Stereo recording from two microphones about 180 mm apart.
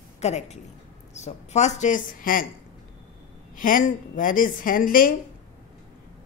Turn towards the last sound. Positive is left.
turn(degrees=50)  # may be behind; listen again after turning